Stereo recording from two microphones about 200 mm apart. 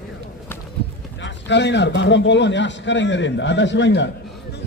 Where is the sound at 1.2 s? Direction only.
60° left (ahead or behind).